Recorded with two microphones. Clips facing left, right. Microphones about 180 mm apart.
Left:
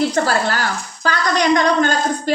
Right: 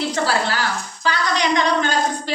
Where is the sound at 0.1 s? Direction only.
45° left (ahead or behind).